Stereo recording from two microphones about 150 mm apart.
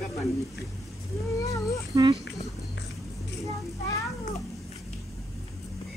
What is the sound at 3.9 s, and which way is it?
Speech, 20° left (ahead or behind).